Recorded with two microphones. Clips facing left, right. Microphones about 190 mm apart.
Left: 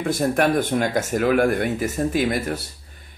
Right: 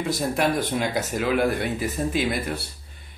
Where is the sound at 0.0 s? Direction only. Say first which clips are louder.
Left 4 dB; 50° left (ahead or behind).